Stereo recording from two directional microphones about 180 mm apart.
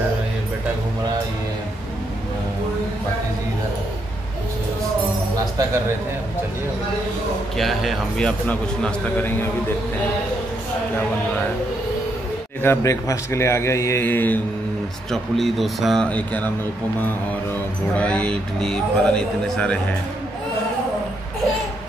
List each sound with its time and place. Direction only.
7.5 s speech: centre (ahead or behind)
12.6 s a man's voice: 15° left (ahead or behind)